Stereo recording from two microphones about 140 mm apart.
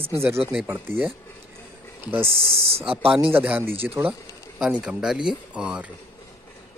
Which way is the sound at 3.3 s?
15° right (ahead or behind).